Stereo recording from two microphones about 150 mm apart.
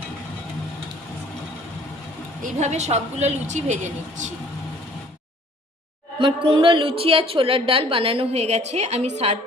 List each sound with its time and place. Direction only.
2.4 s a woman's voice: 50° right (ahead or behind)
6.1 s a woman's voice: 35° right (ahead or behind)